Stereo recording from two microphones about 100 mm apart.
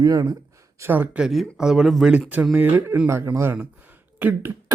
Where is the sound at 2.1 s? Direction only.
15° right (ahead or behind).